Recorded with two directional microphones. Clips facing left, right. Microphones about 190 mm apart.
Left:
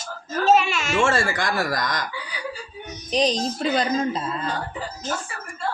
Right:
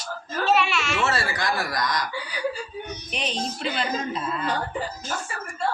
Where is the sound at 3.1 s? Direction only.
35° left (ahead or behind).